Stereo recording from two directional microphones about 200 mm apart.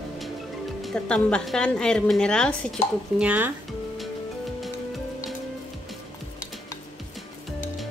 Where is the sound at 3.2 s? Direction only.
5° right (ahead or behind).